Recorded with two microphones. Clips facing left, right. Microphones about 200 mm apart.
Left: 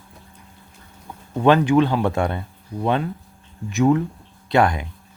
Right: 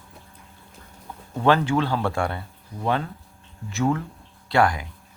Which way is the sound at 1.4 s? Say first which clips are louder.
Left 5 dB; 15° left (ahead or behind).